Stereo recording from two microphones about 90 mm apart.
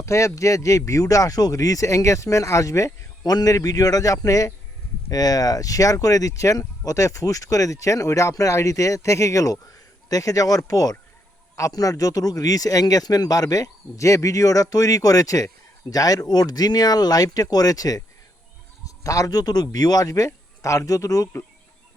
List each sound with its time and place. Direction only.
0.0 s speech: 35° left (ahead or behind)